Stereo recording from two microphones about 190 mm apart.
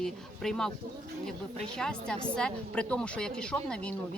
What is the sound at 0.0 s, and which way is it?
A woman's voice, centre (ahead or behind).